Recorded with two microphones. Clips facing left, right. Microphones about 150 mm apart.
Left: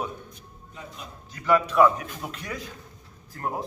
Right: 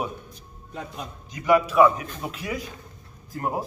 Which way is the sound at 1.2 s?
15° right (ahead or behind).